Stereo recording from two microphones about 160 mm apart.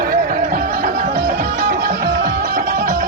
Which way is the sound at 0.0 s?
65° right (ahead or behind).